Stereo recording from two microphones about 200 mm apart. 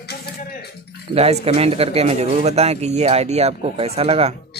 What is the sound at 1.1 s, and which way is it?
Speech, 30° right (ahead or behind).